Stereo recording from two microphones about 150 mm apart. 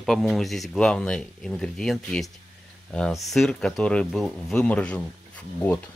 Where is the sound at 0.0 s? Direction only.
Centre (ahead or behind).